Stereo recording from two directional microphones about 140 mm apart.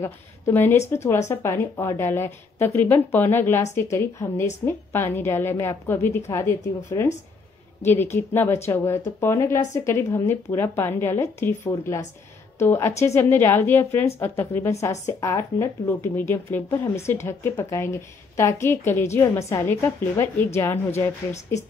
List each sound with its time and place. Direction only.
0.0 s a woman's voice: 15° left (ahead or behind)